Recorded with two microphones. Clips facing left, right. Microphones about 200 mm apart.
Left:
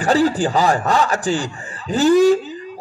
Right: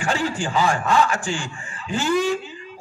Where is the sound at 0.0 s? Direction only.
40° left (ahead or behind).